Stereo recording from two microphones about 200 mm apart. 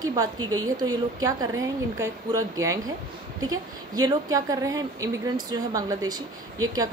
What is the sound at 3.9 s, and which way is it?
A woman's voice, 20° right (ahead or behind).